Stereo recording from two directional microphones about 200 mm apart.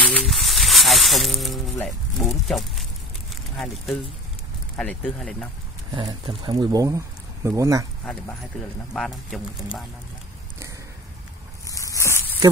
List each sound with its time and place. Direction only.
0.0 s speech: centre (ahead or behind)
5.9 s speech: 25° right (ahead or behind)
8.0 s speech: 5° left (ahead or behind)
11.7 s a sound: 15° left (ahead or behind)